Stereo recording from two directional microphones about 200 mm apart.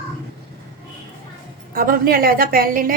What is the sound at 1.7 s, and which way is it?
A woman's voice, 45° right (ahead or behind).